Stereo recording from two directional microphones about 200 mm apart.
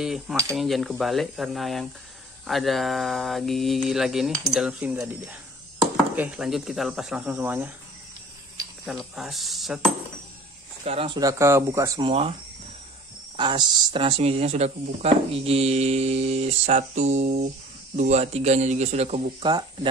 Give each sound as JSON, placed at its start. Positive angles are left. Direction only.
{"t": 0.0, "sound": "speech", "side_deg": 0}
{"t": 8.8, "sound": "speech", "side_deg": 0}
{"t": 10.8, "sound": "speech", "side_deg": -30}
{"t": 12.0, "sound": "speech", "side_deg": -30}
{"t": 13.4, "sound": "speech", "side_deg": -20}